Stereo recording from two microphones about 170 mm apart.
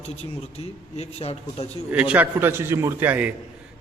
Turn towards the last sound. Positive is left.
turn(degrees=-10)  # may be behind; listen again after turning